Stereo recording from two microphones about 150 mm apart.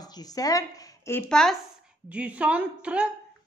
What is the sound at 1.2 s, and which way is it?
Speech, 5° left (ahead or behind).